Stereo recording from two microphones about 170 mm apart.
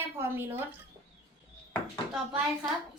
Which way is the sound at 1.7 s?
Centre (ahead or behind).